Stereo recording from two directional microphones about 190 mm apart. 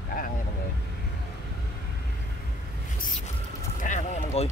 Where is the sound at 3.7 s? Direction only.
40° left (ahead or behind).